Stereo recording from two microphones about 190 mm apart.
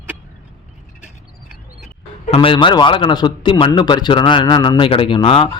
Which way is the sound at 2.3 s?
25° left (ahead or behind).